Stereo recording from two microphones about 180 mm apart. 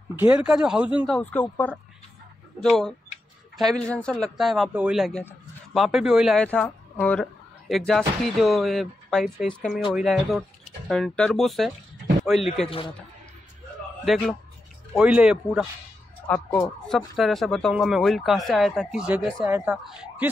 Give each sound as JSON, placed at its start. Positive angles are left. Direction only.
{"t": 0.1, "sound": "speech", "side_deg": -10}
{"t": 12.6, "sound": "a man's voice", "side_deg": 30}
{"t": 14.0, "sound": "speech", "side_deg": 0}
{"t": 17.2, "sound": "speech", "side_deg": 0}